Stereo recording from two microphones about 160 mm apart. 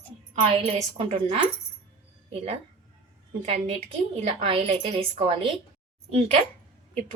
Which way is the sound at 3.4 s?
40° right (ahead or behind).